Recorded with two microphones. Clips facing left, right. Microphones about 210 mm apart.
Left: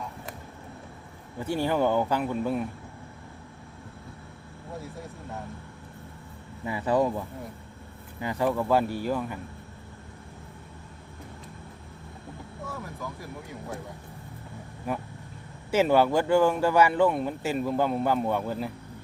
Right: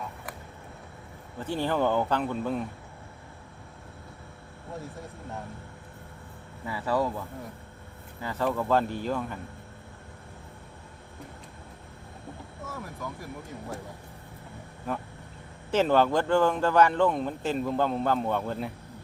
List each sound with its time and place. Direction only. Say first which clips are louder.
1.4 s speech: left 2 dB; 10° left (ahead or behind)
6.7 s speech: left 3 dB; 20° left (ahead or behind)
12.6 s speech: even; centre (ahead or behind)
14.9 s speech: left 2 dB; 10° left (ahead or behind)